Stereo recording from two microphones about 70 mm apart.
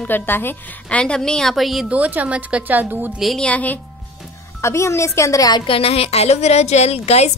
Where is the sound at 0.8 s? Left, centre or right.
Centre.